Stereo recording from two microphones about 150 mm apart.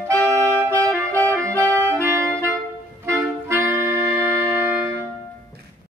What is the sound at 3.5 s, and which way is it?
Music, 15° right (ahead or behind).